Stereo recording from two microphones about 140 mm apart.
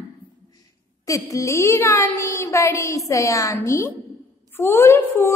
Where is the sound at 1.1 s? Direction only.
25° left (ahead or behind).